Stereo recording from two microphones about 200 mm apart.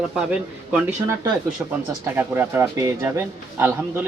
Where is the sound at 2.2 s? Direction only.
10° right (ahead or behind).